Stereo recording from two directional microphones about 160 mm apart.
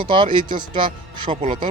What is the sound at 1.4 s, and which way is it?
Speech, 30° right (ahead or behind).